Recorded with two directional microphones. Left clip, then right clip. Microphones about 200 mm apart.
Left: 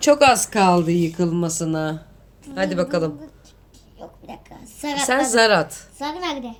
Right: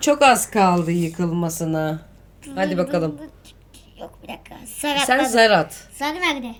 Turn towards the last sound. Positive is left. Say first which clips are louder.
# right 4 dB
turn(degrees=5)  # may be behind; listen again after turning